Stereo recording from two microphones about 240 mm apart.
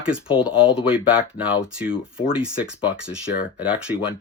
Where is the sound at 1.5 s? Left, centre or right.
Centre.